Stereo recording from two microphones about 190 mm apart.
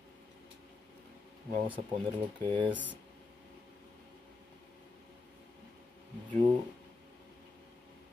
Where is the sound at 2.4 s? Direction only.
25° right (ahead or behind).